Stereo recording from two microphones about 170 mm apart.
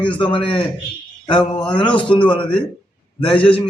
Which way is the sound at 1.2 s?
30° left (ahead or behind).